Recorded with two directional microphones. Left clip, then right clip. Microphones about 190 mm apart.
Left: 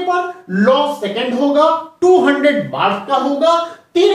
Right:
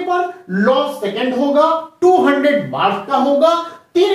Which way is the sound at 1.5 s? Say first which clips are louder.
Left 1 dB; 10° right (ahead or behind).